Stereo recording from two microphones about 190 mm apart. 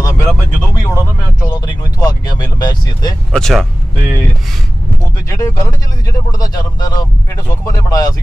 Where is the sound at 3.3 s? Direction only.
5° left (ahead or behind).